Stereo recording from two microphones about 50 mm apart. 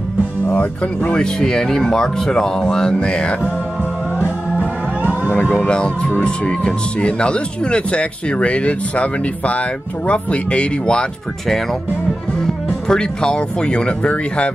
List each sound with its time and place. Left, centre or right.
1.1 s speech: centre
4.6 s music: right
5.3 s speech: left
12.8 s speech: centre